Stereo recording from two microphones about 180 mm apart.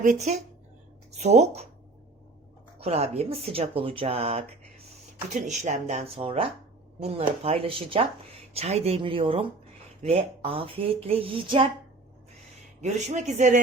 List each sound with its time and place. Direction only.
0.0 s speech: 40° right (ahead or behind)
2.8 s speech: 35° right (ahead or behind)
12.8 s speech: 40° right (ahead or behind)